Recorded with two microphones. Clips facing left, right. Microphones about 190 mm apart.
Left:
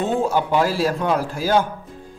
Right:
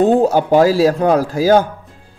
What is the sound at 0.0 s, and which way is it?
Speech, 40° right (ahead or behind).